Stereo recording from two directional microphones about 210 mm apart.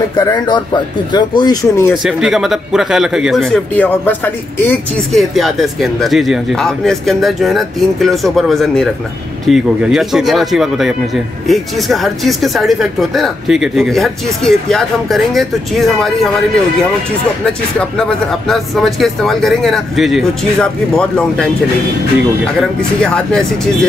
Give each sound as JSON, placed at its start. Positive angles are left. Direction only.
{"t": 0.1, "sound": "speech", "side_deg": 20}
{"t": 2.0, "sound": "speech", "side_deg": 0}
{"t": 17.5, "sound": "speech", "side_deg": 5}
{"t": 22.6, "sound": "speech", "side_deg": 5}